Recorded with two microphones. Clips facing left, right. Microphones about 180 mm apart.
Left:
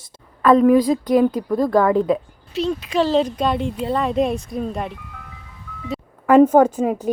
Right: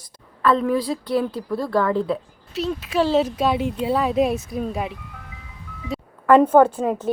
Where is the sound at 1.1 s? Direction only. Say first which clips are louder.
Left 5 dB; 45° left (ahead or behind).